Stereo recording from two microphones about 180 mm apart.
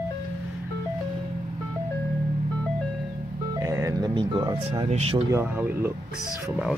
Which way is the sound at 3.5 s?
15° right (ahead or behind).